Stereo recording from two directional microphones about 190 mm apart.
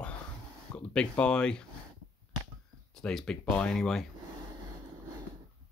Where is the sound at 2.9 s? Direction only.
5° left (ahead or behind).